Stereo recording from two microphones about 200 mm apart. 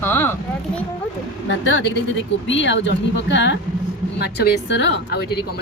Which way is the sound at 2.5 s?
65° left (ahead or behind).